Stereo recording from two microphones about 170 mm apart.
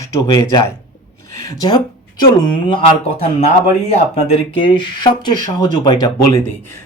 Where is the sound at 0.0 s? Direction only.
20° left (ahead or behind).